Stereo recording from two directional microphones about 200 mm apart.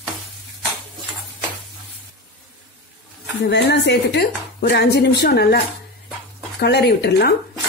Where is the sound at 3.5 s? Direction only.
55° left (ahead or behind).